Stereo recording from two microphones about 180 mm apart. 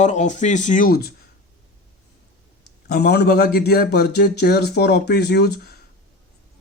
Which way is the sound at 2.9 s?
65° left (ahead or behind).